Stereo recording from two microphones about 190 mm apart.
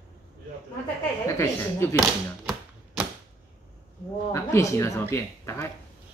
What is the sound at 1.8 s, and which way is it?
Speech, 15° left (ahead or behind).